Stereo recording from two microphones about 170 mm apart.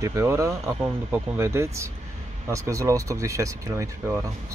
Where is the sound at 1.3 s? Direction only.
15° right (ahead or behind).